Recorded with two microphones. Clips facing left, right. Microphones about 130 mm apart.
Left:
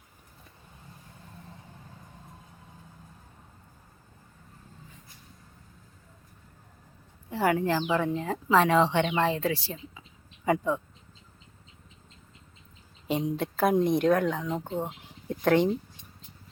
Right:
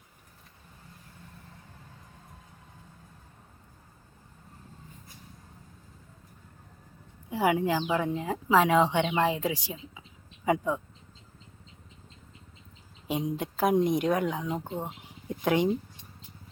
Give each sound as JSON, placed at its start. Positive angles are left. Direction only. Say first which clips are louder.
{"t": 7.3, "sound": "a woman's voice", "louder": "even", "side_deg": -10}
{"t": 13.2, "sound": "speech", "louder": "left 1 dB", "side_deg": -10}